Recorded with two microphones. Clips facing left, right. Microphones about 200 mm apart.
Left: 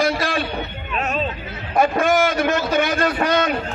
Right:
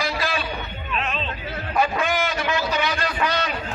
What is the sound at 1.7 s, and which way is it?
A man's voice, 50° left (ahead or behind).